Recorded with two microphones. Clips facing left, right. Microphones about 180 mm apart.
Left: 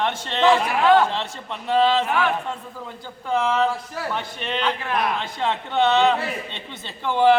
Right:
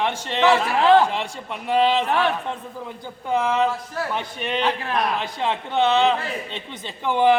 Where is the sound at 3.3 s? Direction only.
15° right (ahead or behind).